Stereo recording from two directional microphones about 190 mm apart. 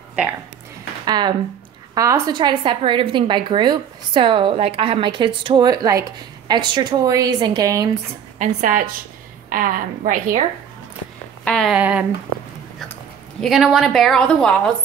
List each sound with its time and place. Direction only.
1.0 s a woman's voice: 20° right (ahead or behind)
8.4 s a woman's voice: 45° right (ahead or behind)
11.4 s speech: centre (ahead or behind)
13.4 s a woman's voice: centre (ahead or behind)